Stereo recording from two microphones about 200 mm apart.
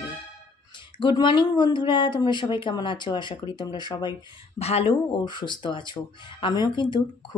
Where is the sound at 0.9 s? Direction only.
25° left (ahead or behind).